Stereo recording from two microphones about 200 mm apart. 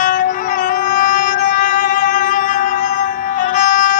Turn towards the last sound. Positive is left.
turn(degrees=40)  # may be behind; listen again after turning